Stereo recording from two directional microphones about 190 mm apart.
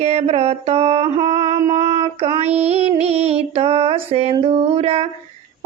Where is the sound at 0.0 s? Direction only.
35° right (ahead or behind).